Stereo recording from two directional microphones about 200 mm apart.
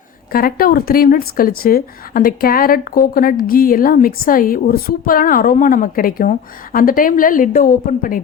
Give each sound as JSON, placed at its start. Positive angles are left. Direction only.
{"t": 0.3, "sound": "speech", "side_deg": 50}